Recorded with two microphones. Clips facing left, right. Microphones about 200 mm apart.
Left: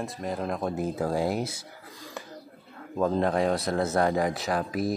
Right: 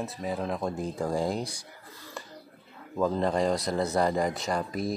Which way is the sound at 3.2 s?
Centre (ahead or behind).